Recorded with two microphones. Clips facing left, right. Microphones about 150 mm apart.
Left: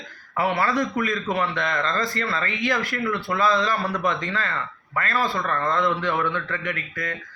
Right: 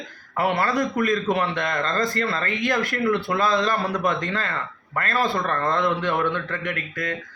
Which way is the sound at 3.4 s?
50° right (ahead or behind).